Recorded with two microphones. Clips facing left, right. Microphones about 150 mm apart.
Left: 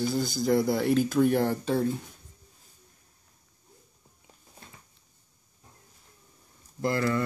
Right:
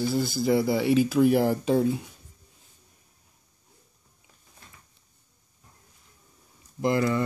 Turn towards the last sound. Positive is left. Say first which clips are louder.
# right 3 dB
turn(degrees=-20)  # may be behind; listen again after turning